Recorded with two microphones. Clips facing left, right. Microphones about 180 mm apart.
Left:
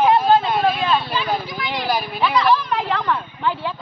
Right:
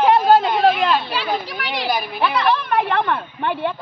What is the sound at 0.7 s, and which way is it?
Speech, 70° right (ahead or behind).